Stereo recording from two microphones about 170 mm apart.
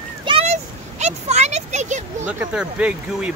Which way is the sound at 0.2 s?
30° right (ahead or behind).